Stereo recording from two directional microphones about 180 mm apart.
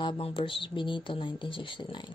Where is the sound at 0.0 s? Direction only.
30° left (ahead or behind).